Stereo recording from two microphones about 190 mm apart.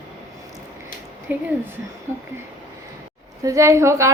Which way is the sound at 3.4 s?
15° right (ahead or behind).